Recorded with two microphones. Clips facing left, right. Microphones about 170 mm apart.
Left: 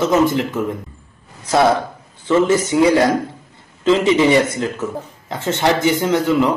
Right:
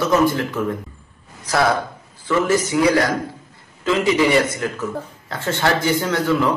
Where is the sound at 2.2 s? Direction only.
25° left (ahead or behind).